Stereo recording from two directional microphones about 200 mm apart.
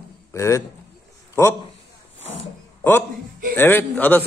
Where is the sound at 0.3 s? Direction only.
15° left (ahead or behind).